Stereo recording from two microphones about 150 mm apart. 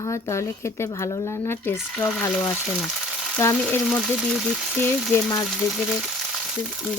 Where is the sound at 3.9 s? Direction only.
Centre (ahead or behind).